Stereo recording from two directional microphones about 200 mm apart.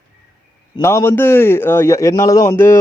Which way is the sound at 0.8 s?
15° left (ahead or behind).